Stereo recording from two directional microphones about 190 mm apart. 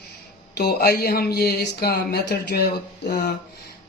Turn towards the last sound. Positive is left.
turn(degrees=55)  # may be behind; listen again after turning